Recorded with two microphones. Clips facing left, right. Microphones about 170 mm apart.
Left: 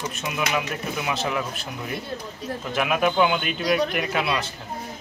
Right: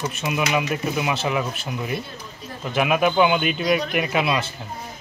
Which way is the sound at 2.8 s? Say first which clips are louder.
Right 3 dB; 5° right (ahead or behind).